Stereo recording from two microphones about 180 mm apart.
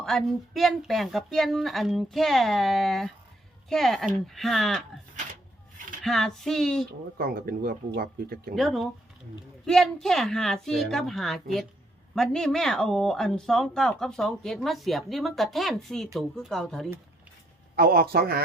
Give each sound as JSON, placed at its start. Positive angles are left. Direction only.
{"t": 0.0, "sound": "speech", "side_deg": 0}
{"t": 6.0, "sound": "speech", "side_deg": 0}
{"t": 7.2, "sound": "speech", "side_deg": -55}
{"t": 8.5, "sound": "speech", "side_deg": 0}
{"t": 17.7, "sound": "speech", "side_deg": -55}